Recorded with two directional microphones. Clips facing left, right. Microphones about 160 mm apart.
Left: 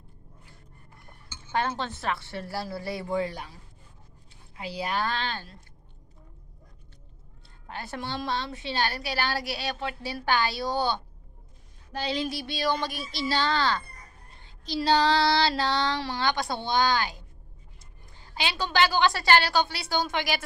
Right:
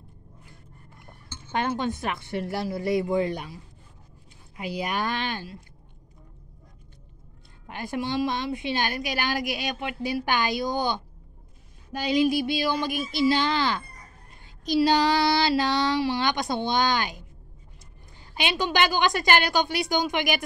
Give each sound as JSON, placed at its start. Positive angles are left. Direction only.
{"t": 1.5, "sound": "a woman's voice", "side_deg": -15}
{"t": 7.6, "sound": "a woman's voice", "side_deg": -15}
{"t": 18.3, "sound": "a woman's voice", "side_deg": -15}